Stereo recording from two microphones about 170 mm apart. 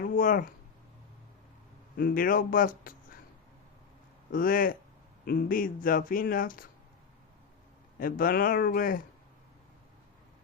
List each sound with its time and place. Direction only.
0.0 s a sound: 55° left (ahead or behind)
2.0 s speech: 55° left (ahead or behind)
4.3 s speech: 55° left (ahead or behind)
7.9 s speech: 55° left (ahead or behind)